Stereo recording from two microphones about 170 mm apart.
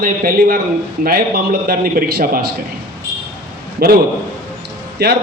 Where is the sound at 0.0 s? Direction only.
60° right (ahead or behind).